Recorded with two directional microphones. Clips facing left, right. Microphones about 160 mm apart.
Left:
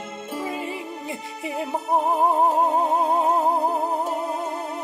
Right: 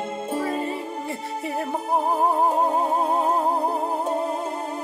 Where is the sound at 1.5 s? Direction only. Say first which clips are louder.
Left 1 dB; 15° left (ahead or behind).